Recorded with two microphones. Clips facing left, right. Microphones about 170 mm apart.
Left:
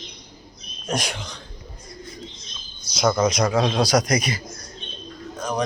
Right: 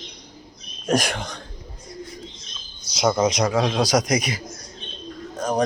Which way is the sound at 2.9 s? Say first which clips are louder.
Even; 20° right (ahead or behind).